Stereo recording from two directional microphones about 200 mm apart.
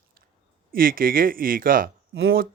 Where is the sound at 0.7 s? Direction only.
45° right (ahead or behind).